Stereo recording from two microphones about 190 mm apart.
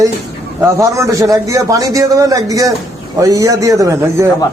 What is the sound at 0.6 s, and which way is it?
A man's voice, 15° right (ahead or behind).